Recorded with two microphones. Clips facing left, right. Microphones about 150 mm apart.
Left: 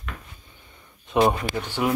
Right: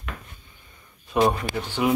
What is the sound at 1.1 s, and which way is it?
Speech, 20° left (ahead or behind).